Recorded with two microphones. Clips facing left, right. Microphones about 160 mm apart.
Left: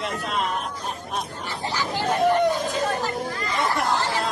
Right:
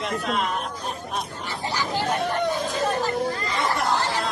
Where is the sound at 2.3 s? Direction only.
15° left (ahead or behind).